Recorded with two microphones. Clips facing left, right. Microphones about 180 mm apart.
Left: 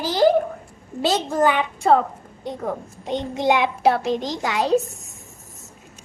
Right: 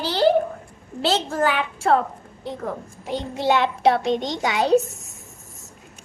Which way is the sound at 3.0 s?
20° left (ahead or behind).